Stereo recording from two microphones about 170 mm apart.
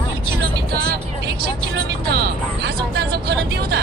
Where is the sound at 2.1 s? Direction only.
70° right (ahead or behind).